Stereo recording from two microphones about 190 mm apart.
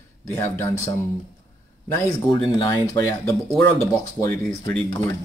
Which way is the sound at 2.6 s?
15° left (ahead or behind).